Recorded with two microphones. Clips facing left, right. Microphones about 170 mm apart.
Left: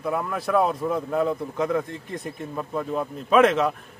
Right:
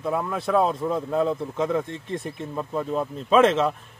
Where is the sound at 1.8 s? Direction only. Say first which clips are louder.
Right 2 dB; 25° right (ahead or behind).